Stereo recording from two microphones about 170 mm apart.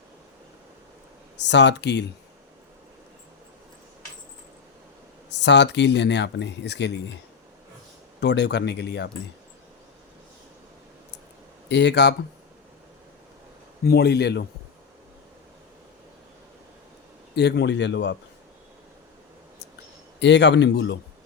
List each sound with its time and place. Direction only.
1.4 s speech: 90° left
5.3 s speech: 90° left
8.2 s speech: 85° left
11.7 s speech: 90° left
13.8 s speech: 70° left (ahead or behind)
17.3 s speech: 80° left
20.1 s speech: 90° left